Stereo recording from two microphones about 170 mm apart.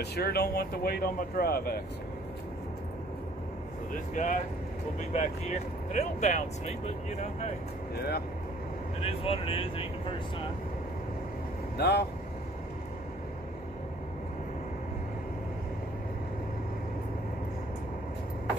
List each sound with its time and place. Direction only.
0.0 s speech: 70° left (ahead or behind)
4.1 s speech: 50° left (ahead or behind)
7.9 s speech: 70° left (ahead or behind)
9.0 s speech: 35° left (ahead or behind)
11.7 s speech: 75° left (ahead or behind)